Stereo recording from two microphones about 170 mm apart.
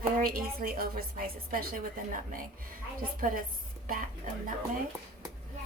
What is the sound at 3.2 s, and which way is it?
Speech, 55° right (ahead or behind).